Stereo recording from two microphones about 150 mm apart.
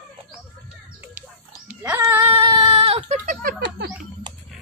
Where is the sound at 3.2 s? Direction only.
65° right (ahead or behind).